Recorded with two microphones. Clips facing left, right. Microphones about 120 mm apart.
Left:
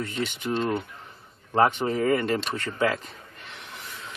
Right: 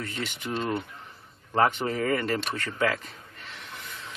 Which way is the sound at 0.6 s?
Centre (ahead or behind).